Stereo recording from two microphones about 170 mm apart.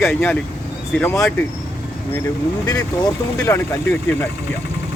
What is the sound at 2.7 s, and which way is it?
Speech, 20° left (ahead or behind).